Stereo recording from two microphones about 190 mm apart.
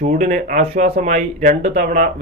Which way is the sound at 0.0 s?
40° right (ahead or behind).